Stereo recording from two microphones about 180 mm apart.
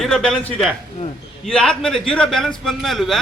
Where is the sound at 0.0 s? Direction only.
5° left (ahead or behind).